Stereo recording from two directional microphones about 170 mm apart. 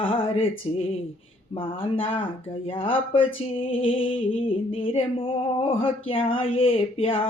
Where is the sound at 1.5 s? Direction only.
30° left (ahead or behind).